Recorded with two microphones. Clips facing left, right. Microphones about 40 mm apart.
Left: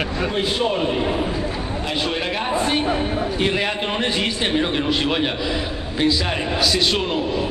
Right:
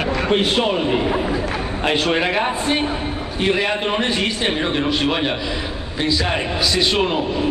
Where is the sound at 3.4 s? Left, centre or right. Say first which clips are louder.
Right 6 dB; centre.